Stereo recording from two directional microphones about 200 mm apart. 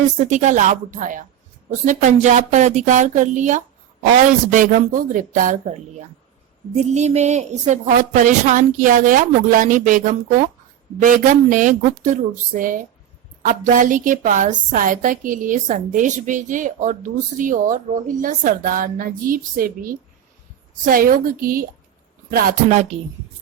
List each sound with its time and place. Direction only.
0.3 s a woman's voice: 40° right (ahead or behind)